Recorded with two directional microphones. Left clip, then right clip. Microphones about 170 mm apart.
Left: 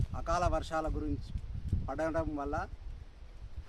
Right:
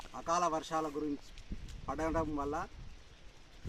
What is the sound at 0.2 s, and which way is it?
Speech, 25° left (ahead or behind).